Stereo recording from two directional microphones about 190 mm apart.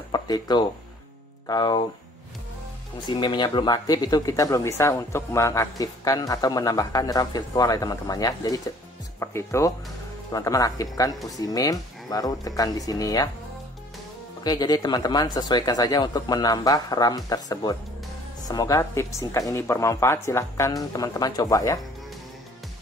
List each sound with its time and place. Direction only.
0.1 s speech: 20° left (ahead or behind)
3.1 s speech: 25° left (ahead or behind)
14.4 s speech: 20° left (ahead or behind)